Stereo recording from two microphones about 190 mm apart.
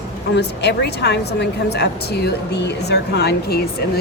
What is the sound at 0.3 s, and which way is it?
A woman's voice, 60° left (ahead or behind).